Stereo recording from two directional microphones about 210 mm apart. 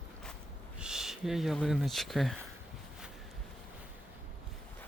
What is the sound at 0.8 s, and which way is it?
Speech, 5° right (ahead or behind).